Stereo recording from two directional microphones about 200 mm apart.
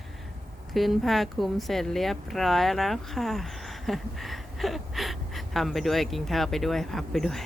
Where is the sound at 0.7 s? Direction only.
Centre (ahead or behind).